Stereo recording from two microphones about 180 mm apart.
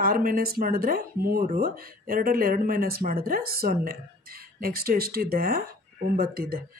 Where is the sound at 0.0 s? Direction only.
55° right (ahead or behind).